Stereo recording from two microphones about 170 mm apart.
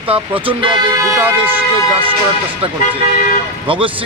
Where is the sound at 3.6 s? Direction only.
30° right (ahead or behind).